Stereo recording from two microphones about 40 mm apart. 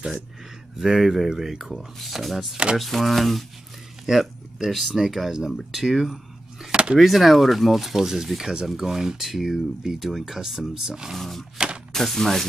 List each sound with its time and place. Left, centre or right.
0.7 s speech: centre
2.0 s speech: centre
2.5 s speech: right
2.8 s speech: centre
6.7 s a sound: right
7.0 s speech: centre
11.1 s a sound: centre
11.5 s a sound: right
11.9 s speech: centre